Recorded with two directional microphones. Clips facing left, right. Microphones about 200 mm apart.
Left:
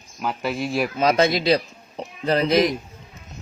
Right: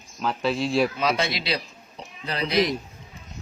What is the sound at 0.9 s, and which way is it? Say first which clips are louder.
A man's voice: left 6 dB; 45° left (ahead or behind).